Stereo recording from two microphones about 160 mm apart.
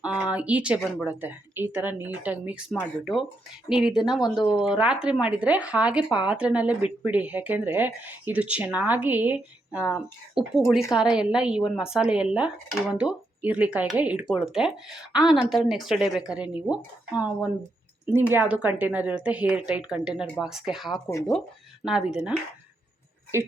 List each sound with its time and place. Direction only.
0.0 s a woman's voice: 5° right (ahead or behind)
21.1 s speech: 20° left (ahead or behind)
21.8 s a woman's voice: 5° right (ahead or behind)
23.3 s speech: 15° right (ahead or behind)